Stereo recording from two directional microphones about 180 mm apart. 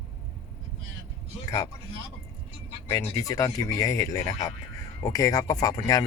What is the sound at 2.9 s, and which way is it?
A man's voice, 15° left (ahead or behind).